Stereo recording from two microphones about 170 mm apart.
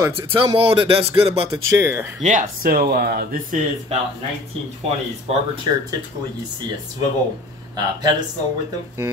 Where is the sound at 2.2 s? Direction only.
45° right (ahead or behind).